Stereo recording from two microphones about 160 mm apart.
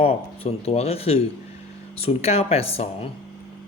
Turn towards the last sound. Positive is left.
turn(degrees=40)  # may be behind; listen again after turning